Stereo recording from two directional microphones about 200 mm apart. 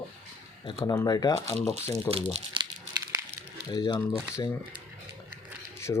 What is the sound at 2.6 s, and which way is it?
Crumpling, 25° right (ahead or behind).